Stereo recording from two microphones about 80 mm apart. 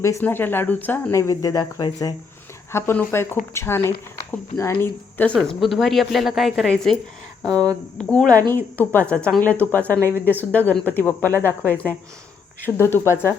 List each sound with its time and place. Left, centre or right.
0.2 s speech: left
1.1 s speech: left
2.7 s speech: left
5.1 s speech: centre
5.4 s a woman's voice: centre
10.0 s speech: right
10.2 s speech: left